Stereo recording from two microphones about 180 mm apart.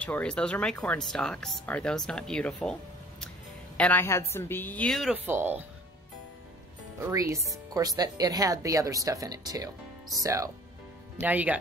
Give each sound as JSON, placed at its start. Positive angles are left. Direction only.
{"t": 0.0, "sound": "speech", "side_deg": 5}
{"t": 5.1, "sound": "speech", "side_deg": -10}
{"t": 7.1, "sound": "speech", "side_deg": -20}